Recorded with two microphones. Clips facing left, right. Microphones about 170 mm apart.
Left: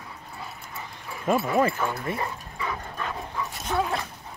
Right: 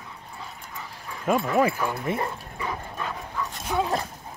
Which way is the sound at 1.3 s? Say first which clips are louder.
Right 1 dB; centre (ahead or behind).